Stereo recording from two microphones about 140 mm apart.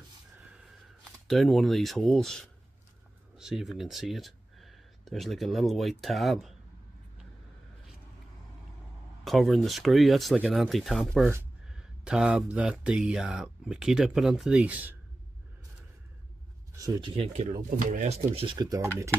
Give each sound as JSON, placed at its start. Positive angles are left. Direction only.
{"t": 1.2, "sound": "speech", "side_deg": 0}
{"t": 9.2, "sound": "speech", "side_deg": 0}
{"t": 17.0, "sound": "speech", "side_deg": -40}
{"t": 18.0, "sound": "speech", "side_deg": -45}
{"t": 18.7, "sound": "speech", "side_deg": -20}